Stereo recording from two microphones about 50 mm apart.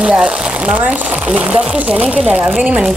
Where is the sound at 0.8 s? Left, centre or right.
Right.